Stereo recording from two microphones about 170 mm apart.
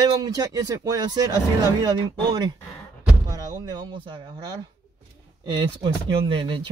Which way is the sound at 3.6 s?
25° right (ahead or behind).